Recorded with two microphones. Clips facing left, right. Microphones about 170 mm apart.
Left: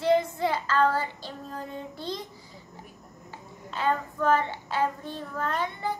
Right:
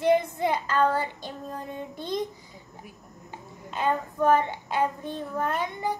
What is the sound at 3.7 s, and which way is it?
Speech, 15° right (ahead or behind).